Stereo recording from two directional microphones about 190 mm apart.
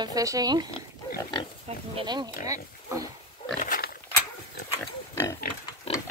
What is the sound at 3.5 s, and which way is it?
Pig, 45° left (ahead or behind).